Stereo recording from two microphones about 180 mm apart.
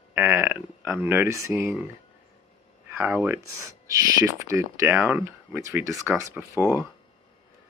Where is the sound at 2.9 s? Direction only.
10° right (ahead or behind).